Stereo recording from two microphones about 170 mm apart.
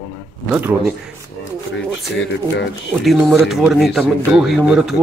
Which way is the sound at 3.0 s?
Centre (ahead or behind).